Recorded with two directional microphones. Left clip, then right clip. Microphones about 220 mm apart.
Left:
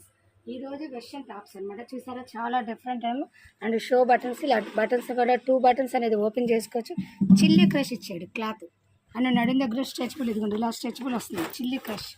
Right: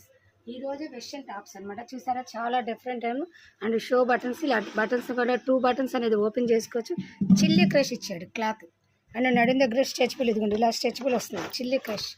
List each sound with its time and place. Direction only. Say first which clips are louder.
0.4 s speech: right 2 dB; 10° right (ahead or behind)
2.5 s speech: even; 20° right (ahead or behind)
3.6 s speech: left 1 dB; 5° right (ahead or behind); by 12.0 s 25° right (ahead or behind)